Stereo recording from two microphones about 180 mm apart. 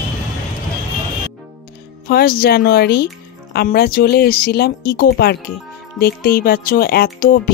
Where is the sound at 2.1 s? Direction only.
60° left (ahead or behind).